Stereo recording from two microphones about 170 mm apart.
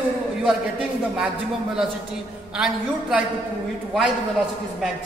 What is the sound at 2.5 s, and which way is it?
Speech, 5° right (ahead or behind).